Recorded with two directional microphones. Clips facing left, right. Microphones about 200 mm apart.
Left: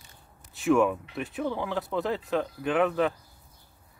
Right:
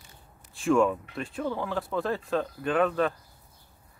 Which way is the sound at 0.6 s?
5° left (ahead or behind).